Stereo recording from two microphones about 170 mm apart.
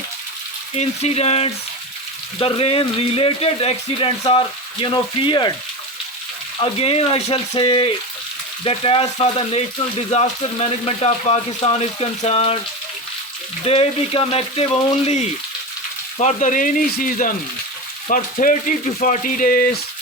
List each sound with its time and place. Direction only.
0.8 s speech: 40° left (ahead or behind)
6.6 s speech: 35° left (ahead or behind)
13.7 s speech: 35° left (ahead or behind); by 19.8 s 60° left (ahead or behind)